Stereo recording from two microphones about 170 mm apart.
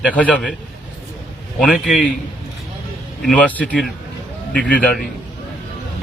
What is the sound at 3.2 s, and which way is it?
A man's voice, 5° left (ahead or behind).